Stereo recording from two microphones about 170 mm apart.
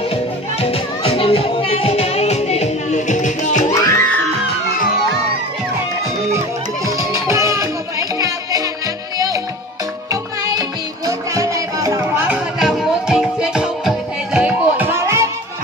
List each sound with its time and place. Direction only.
0.1 s music: 35° left (ahead or behind)
3.7 s music: 20° left (ahead or behind)
7.0 s music: 20° right (ahead or behind)
11.1 s music: 20° right (ahead or behind)